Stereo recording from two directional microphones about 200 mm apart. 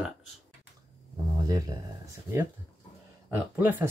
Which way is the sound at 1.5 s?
15° right (ahead or behind).